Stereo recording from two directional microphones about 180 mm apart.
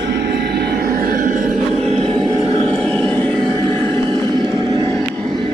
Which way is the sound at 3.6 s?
30° right (ahead or behind).